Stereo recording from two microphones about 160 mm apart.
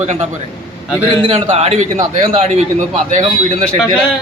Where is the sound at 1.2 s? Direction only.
40° right (ahead or behind).